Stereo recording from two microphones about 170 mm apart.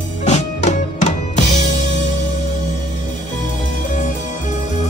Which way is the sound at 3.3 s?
50° left (ahead or behind).